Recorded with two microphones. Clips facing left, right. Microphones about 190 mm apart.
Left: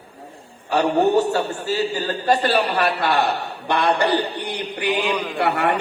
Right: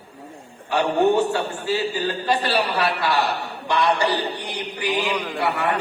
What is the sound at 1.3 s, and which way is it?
A man's voice, 40° left (ahead or behind).